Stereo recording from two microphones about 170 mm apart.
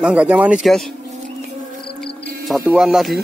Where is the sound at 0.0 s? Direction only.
5° right (ahead or behind).